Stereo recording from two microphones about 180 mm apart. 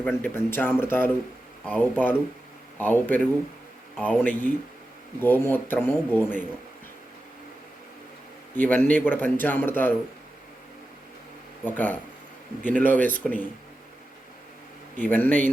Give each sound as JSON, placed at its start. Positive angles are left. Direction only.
{"t": 0.0, "sound": "a man's voice", "side_deg": 10}
{"t": 8.5, "sound": "a man's voice", "side_deg": 10}
{"t": 11.6, "sound": "a man's voice", "side_deg": 10}
{"t": 14.9, "sound": "a man's voice", "side_deg": 10}